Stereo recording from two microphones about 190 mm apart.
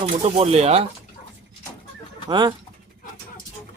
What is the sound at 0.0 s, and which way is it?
Speech, 30° right (ahead or behind).